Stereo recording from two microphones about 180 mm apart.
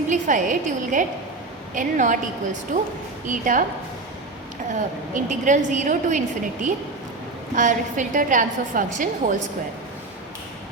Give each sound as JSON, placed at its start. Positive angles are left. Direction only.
{"t": 0.1, "sound": "a woman's voice", "side_deg": -45}
{"t": 5.1, "sound": "a woman's voice", "side_deg": -45}